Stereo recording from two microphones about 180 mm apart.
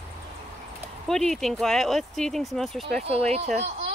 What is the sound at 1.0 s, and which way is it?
Speech, centre (ahead or behind).